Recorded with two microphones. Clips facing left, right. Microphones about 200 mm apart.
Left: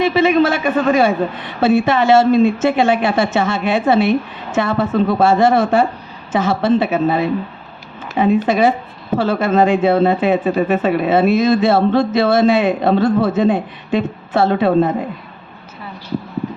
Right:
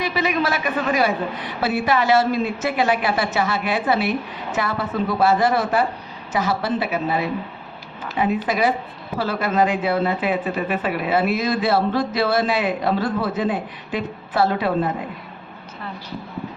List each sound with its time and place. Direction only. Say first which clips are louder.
0.0 s a woman's voice: left 9 dB; 25° left (ahead or behind)
8.4 s a woman's voice: left 6 dB; 25° left (ahead or behind)